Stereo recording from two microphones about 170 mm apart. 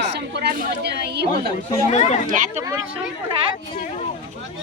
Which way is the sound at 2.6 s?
20° right (ahead or behind).